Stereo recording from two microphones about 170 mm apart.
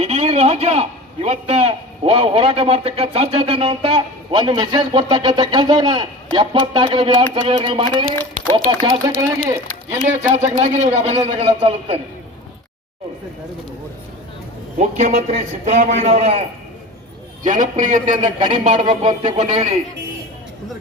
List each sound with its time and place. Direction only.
0.0 s a man's voice: 40° right (ahead or behind)
9.6 s a man's voice: 50° right (ahead or behind); by 11.9 s 30° right (ahead or behind)
14.8 s a man's voice: 45° right (ahead or behind)
17.4 s a man's voice: 50° right (ahead or behind)